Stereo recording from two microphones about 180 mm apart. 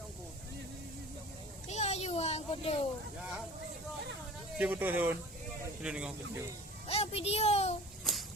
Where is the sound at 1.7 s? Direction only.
40° left (ahead or behind).